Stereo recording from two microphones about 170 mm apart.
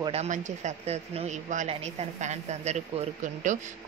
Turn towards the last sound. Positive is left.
turn(degrees=-45)  # may be behind; listen again after turning